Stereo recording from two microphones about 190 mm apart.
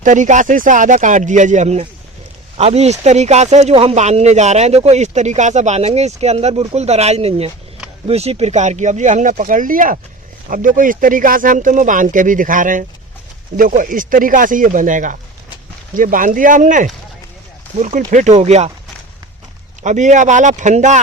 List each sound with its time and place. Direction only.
0.0 s speech: 40° right (ahead or behind)
19.8 s speech: 40° right (ahead or behind)